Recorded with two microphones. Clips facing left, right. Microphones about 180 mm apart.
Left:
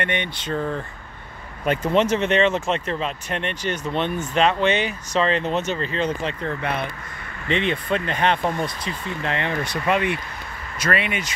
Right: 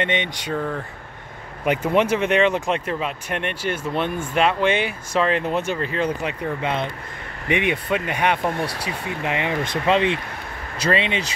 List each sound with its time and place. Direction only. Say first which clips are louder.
0.0 s speech: right 2 dB; 20° right (ahead or behind)
1.6 s speech: even; 10° right (ahead or behind)
8.6 s speech: right 1 dB; 75° right (ahead or behind)
9.2 s speech: right 1 dB; 15° right (ahead or behind)